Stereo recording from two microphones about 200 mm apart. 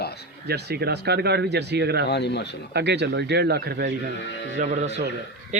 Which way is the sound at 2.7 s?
55° right (ahead or behind).